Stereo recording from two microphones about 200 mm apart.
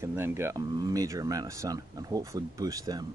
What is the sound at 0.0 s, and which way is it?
Speech, 10° right (ahead or behind).